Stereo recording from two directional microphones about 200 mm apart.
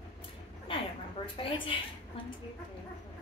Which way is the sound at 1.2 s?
25° left (ahead or behind).